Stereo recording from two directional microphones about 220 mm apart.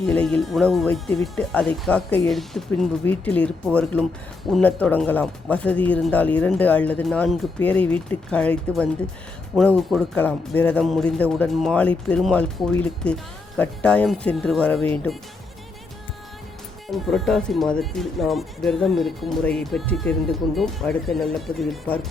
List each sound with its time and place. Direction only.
0.0 s speech: 5° left (ahead or behind)
16.9 s speech: centre (ahead or behind)